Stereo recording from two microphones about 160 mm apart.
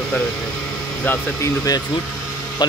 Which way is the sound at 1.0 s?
15° left (ahead or behind).